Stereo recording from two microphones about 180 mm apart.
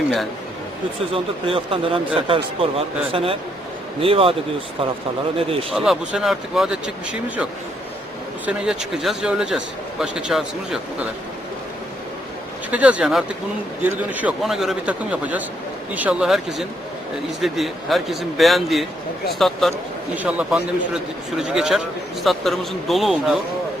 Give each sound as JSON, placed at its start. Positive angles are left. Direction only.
{"t": 1.1, "sound": "speech", "side_deg": -30}
{"t": 5.4, "sound": "speech", "side_deg": -30}
{"t": 5.7, "sound": "speech", "side_deg": 0}
{"t": 8.4, "sound": "speech", "side_deg": -5}
{"t": 12.7, "sound": "speech", "side_deg": -5}